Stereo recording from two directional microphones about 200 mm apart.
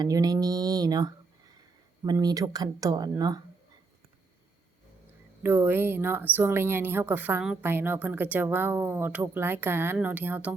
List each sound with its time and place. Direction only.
0.0 s speech: 20° right (ahead or behind)
5.4 s speech: 10° right (ahead or behind)